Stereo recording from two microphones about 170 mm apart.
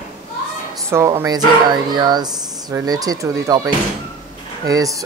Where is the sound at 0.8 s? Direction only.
15° right (ahead or behind).